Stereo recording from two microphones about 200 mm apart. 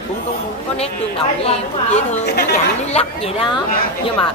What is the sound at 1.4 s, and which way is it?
A woman's voice, 30° left (ahead or behind).